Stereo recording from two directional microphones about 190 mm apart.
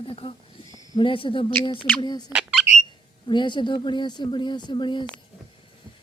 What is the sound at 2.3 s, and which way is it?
Squawk, 5° right (ahead or behind).